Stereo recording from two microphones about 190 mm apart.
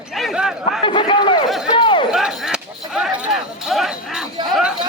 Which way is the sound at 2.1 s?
Centre (ahead or behind).